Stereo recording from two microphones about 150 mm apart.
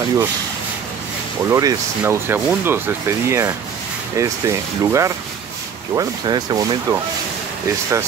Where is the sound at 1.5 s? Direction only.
20° right (ahead or behind).